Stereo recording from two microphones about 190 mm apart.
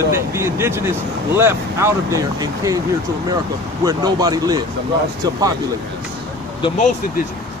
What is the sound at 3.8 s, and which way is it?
Speech, 20° right (ahead or behind).